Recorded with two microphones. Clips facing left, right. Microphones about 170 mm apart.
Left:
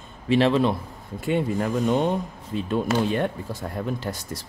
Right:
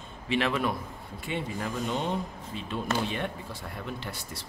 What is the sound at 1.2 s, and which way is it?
Speech, 45° left (ahead or behind).